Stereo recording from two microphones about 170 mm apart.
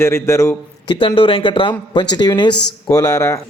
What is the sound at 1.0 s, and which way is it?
Speech, 30° left (ahead or behind).